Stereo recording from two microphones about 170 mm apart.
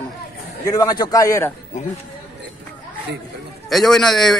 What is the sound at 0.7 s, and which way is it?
Speech, 20° left (ahead or behind).